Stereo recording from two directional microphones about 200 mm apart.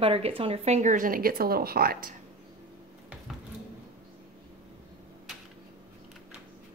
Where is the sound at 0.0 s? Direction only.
25° right (ahead or behind); by 2.1 s 45° right (ahead or behind).